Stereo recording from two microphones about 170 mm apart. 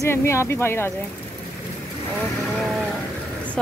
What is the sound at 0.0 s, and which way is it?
Speech, 15° left (ahead or behind).